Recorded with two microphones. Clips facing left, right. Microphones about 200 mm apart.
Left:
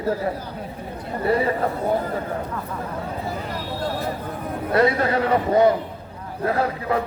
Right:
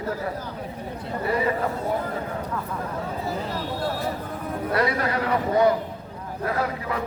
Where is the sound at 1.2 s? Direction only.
35° left (ahead or behind).